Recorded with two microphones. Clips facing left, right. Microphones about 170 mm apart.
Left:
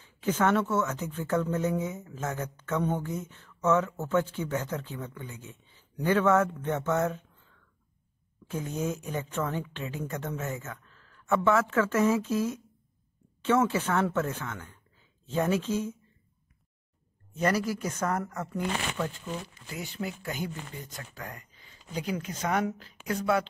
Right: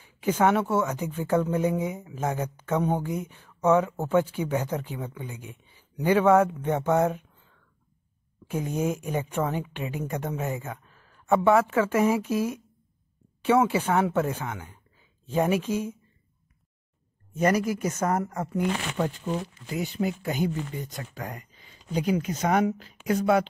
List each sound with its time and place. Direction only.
0.0 s a sound: 10° right (ahead or behind)
0.8 s a woman's voice: 10° right (ahead or behind)
8.5 s a woman's voice: 10° right (ahead or behind)
17.4 s a woman's voice: 15° right (ahead or behind)
18.9 s speech: 35° right (ahead or behind)
19.7 s a woman's voice: 20° right (ahead or behind)